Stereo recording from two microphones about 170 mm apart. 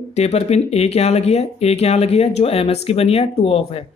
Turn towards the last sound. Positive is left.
turn(degrees=35)  # may be behind; listen again after turning